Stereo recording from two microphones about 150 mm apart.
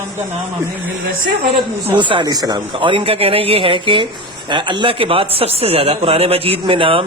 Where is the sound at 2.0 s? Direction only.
30° right (ahead or behind).